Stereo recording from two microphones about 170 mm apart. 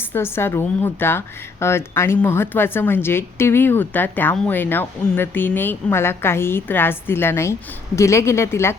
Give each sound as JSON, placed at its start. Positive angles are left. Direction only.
{"t": 0.1, "sound": "a woman's voice", "side_deg": 15}